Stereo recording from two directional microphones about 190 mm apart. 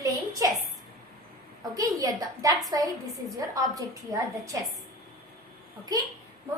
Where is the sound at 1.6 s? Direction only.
20° right (ahead or behind).